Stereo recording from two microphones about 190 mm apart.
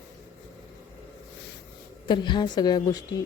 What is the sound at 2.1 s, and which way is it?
Speech, 25° left (ahead or behind).